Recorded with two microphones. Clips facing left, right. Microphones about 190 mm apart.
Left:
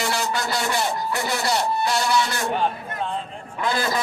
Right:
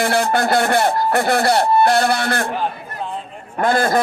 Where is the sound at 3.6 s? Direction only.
55° right (ahead or behind).